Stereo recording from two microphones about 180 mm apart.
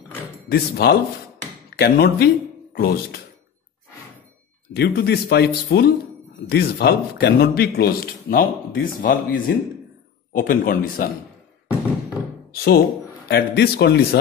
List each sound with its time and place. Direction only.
0.5 s a man's voice: 60° left (ahead or behind)
4.7 s a man's voice: 65° left (ahead or behind)
12.5 s a man's voice: 55° left (ahead or behind)